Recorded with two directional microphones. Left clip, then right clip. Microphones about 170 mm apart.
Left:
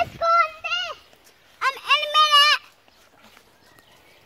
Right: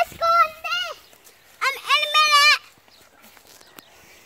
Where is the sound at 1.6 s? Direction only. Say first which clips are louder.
Even; 50° left (ahead or behind).